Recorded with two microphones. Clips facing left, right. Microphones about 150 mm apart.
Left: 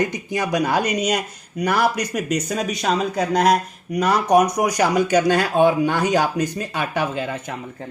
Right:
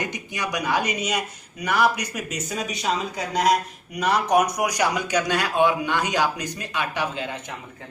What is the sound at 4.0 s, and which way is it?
Speech, 40° left (ahead or behind).